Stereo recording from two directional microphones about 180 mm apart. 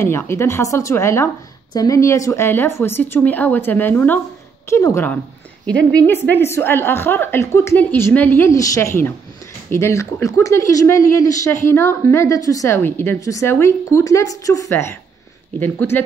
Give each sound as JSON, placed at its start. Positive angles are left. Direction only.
{"t": 0.0, "sound": "a woman's voice", "side_deg": 15}